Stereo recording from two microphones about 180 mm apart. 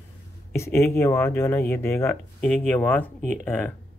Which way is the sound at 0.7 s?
15° left (ahead or behind).